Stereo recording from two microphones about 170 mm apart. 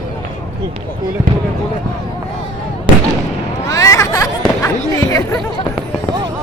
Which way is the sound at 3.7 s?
20° left (ahead or behind).